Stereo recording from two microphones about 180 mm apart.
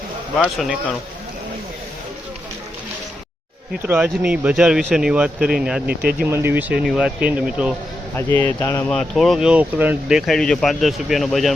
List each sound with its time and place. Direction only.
0.3 s speech: centre (ahead or behind)
3.8 s speech: 10° right (ahead or behind)
5.9 s speech: 60° right (ahead or behind)
6.1 s speech: 10° right (ahead or behind)
8.1 s speech: 10° left (ahead or behind)